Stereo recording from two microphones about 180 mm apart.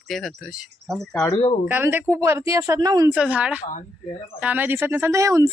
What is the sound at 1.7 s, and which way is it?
Speech, 10° right (ahead or behind).